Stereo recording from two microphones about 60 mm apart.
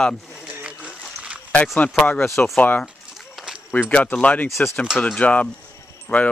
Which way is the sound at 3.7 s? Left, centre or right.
Left.